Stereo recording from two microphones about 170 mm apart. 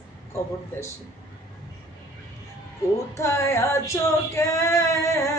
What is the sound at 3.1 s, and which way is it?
Female singing, 15° left (ahead or behind).